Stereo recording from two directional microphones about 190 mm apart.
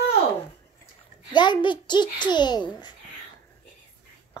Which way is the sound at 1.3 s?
25° left (ahead or behind).